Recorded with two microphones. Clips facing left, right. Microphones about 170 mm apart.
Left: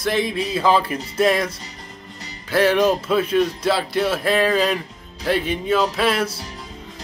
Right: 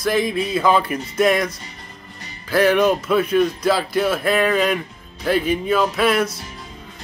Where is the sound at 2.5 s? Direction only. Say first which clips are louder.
Right 1 dB; 30° left (ahead or behind).